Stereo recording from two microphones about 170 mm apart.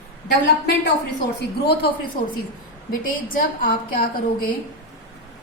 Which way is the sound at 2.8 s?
55° left (ahead or behind).